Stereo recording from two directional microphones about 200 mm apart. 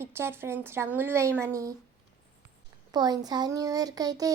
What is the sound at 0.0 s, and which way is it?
Speech, 10° right (ahead or behind).